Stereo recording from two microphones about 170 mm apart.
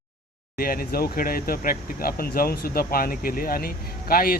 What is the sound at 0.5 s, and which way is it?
Speech, 60° left (ahead or behind).